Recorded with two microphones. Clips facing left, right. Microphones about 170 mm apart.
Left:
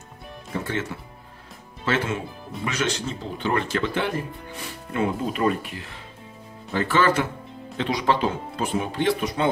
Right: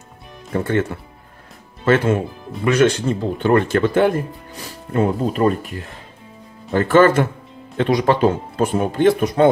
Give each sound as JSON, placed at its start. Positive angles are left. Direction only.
{"t": 0.5, "sound": "speech", "side_deg": -55}
{"t": 1.9, "sound": "speech", "side_deg": -55}